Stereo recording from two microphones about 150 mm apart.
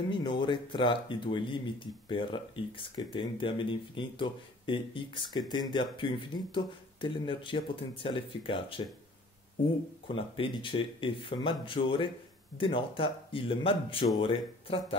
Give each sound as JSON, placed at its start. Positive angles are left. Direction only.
{"t": 0.1, "sound": "speech", "side_deg": 30}
{"t": 10.0, "sound": "speech", "side_deg": 35}